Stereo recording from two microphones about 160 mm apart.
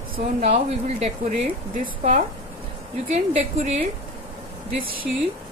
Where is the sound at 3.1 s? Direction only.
45° right (ahead or behind).